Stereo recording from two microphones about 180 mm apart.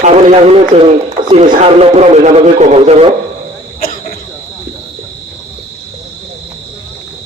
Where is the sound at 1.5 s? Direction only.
40° right (ahead or behind).